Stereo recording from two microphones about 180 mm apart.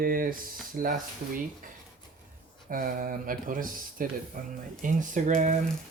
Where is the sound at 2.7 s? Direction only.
50° right (ahead or behind).